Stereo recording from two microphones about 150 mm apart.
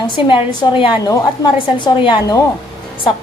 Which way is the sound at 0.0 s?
35° left (ahead or behind).